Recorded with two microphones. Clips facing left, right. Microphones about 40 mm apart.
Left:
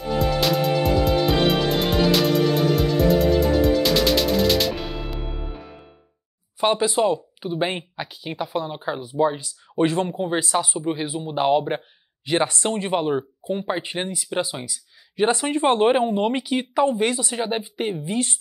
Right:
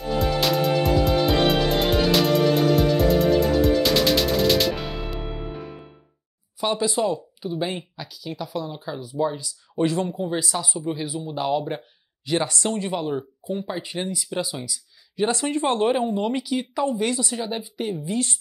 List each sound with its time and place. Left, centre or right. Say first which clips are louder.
0.1 s music: left 1 dB; centre
6.6 s speech: left 3 dB; left